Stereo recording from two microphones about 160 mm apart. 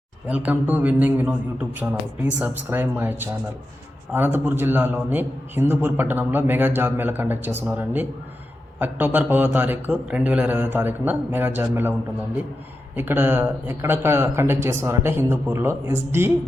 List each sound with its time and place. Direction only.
0.3 s a man's voice: 10° right (ahead or behind)
2.4 s a man's voice: 10° right (ahead or behind)
13.0 s a man's voice: 15° right (ahead or behind)